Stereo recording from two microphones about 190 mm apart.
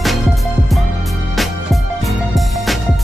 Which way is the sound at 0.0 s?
Centre (ahead or behind).